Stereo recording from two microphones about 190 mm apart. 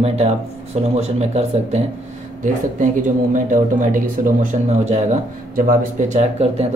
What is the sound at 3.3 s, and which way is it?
Speech, 45° right (ahead or behind).